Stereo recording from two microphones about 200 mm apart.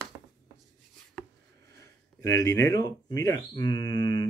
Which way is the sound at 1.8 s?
15° left (ahead or behind).